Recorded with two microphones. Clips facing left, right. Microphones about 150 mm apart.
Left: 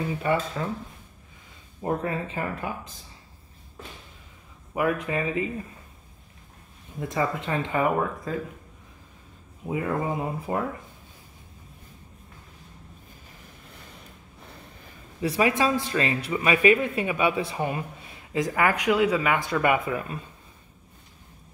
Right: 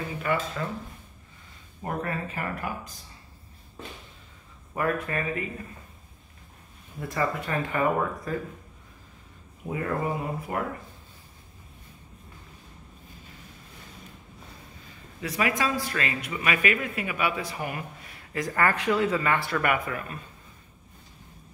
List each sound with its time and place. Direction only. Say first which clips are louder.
0.2 s speech: left 1 dB; 25° left (ahead or behind)
1.9 s speech: left 4 dB; 25° left (ahead or behind)
4.7 s speech: left 2 dB; 15° left (ahead or behind)
7.0 s speech: left 1 dB; 20° left (ahead or behind)
9.7 s speech: left 2 dB; 20° left (ahead or behind)
15.2 s speech: left 4 dB; 30° left (ahead or behind)